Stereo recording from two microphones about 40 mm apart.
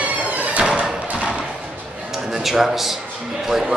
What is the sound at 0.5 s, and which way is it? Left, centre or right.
Music, right.